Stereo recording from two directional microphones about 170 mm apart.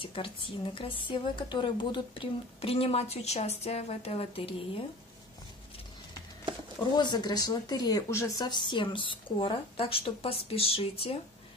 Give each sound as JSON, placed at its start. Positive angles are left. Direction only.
{"t": 0.0, "sound": "a woman's voice", "side_deg": 30}
{"t": 7.0, "sound": "speech", "side_deg": 25}